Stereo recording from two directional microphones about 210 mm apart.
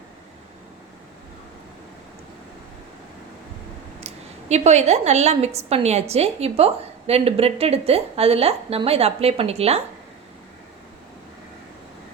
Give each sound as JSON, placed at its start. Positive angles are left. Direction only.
{"t": 4.0, "sound": "a woman's voice", "side_deg": -30}